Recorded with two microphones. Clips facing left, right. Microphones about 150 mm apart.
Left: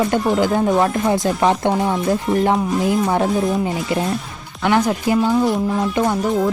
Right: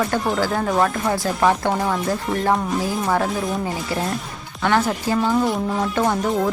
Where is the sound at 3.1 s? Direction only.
20° left (ahead or behind).